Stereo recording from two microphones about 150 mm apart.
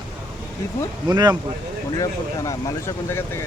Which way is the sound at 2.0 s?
20° left (ahead or behind).